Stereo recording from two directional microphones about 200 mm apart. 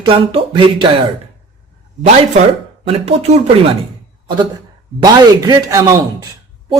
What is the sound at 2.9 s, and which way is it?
Speech, 30° right (ahead or behind).